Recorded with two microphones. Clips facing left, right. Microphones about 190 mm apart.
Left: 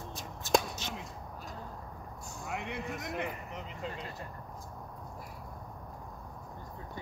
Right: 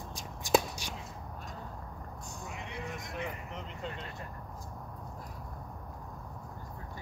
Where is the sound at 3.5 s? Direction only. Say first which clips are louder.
Even; centre (ahead or behind).